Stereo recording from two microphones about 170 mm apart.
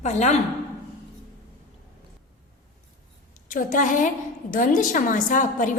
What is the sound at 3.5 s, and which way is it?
A woman's voice, 50° left (ahead or behind).